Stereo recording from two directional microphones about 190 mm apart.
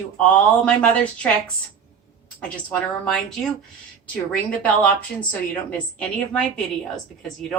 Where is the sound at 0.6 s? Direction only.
5° left (ahead or behind).